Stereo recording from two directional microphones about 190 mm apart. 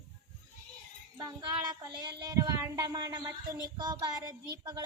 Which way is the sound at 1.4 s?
20° right (ahead or behind).